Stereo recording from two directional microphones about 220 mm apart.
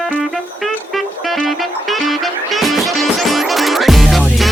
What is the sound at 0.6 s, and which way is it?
Music, centre (ahead or behind).